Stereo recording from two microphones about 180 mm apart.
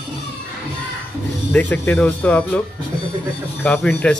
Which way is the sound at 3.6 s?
10° left (ahead or behind).